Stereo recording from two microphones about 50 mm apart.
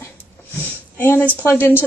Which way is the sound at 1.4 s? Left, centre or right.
Left.